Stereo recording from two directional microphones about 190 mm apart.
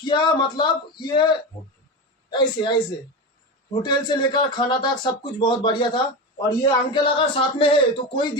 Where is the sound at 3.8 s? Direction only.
25° left (ahead or behind).